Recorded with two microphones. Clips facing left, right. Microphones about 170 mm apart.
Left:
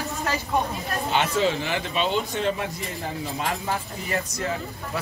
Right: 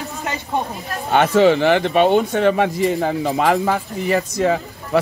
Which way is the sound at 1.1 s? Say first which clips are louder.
Right 10 dB; 60° right (ahead or behind).